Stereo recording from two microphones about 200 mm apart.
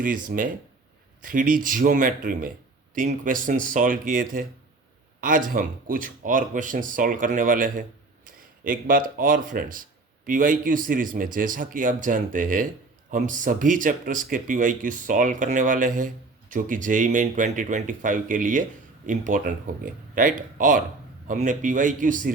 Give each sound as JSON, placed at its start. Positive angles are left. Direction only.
{"t": 0.0, "sound": "speech", "side_deg": -45}